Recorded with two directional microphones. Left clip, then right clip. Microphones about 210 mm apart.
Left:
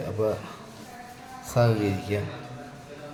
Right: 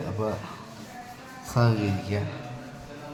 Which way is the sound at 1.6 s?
10° left (ahead or behind).